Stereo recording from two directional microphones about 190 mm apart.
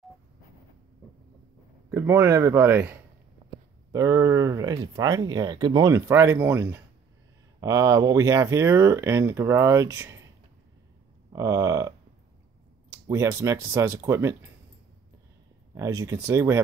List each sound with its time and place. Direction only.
1.9 s speech: 15° right (ahead or behind)
11.3 s speech: 20° right (ahead or behind)
12.9 s speech: 15° right (ahead or behind)
15.7 s speech: 15° right (ahead or behind)